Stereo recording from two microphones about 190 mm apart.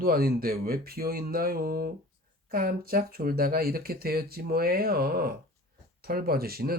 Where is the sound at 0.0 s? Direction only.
50° right (ahead or behind).